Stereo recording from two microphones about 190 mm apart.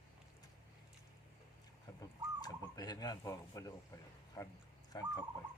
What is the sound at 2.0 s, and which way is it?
Bird, 20° left (ahead or behind).